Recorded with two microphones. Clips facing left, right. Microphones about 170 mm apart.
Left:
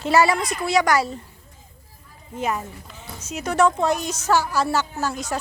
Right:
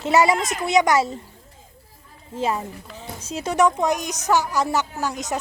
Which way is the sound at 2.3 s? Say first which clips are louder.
Right 2 dB; 25° right (ahead or behind).